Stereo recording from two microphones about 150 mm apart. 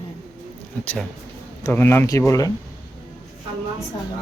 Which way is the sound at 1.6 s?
15° left (ahead or behind).